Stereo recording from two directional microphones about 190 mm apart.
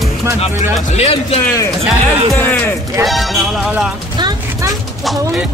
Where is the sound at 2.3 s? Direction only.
10° left (ahead or behind).